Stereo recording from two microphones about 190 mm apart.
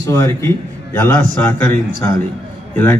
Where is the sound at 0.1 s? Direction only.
15° left (ahead or behind).